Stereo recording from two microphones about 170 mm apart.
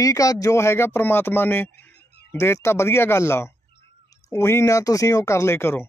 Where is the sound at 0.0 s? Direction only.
20° left (ahead or behind).